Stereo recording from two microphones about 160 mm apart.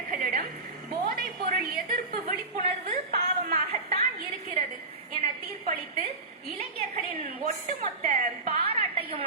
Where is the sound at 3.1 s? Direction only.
75° right (ahead or behind).